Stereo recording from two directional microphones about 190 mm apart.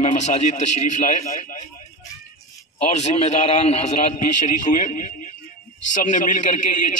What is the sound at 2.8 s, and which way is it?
A man's voice, 35° left (ahead or behind).